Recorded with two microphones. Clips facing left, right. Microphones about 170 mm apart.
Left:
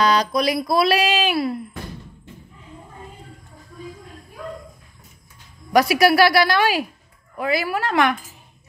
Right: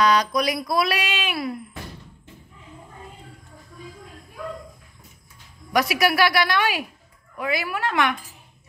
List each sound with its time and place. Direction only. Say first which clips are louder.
0.0 s speech: left 1 dB; 30° left (ahead or behind)
5.7 s speech: left 5 dB; 35° left (ahead or behind)